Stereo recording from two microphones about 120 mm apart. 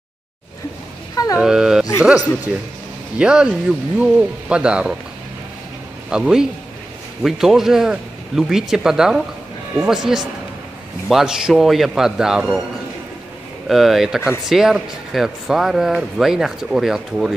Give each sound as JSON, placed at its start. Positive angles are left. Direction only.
{"t": 1.1, "sound": "a sound", "side_deg": 30}
{"t": 1.4, "sound": "speech", "side_deg": -5}
{"t": 6.0, "sound": "speech", "side_deg": -5}
{"t": 13.7, "sound": "speech", "side_deg": 0}